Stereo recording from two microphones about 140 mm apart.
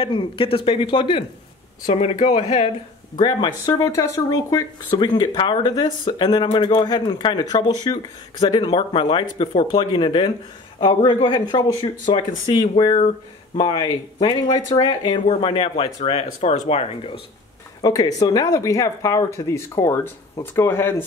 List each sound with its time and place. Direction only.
0.0 s speech: 35° left (ahead or behind)
1.9 s speech: 50° left (ahead or behind)
3.2 s speech: 30° left (ahead or behind)
17.8 s speech: 25° left (ahead or behind)